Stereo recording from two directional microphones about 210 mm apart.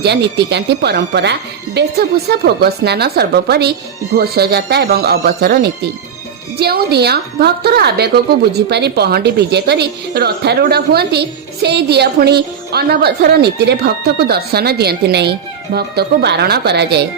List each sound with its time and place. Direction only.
0.0 s a woman's voice: 50° right (ahead or behind)